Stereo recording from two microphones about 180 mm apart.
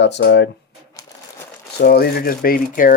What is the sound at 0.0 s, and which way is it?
Speech, 70° left (ahead or behind).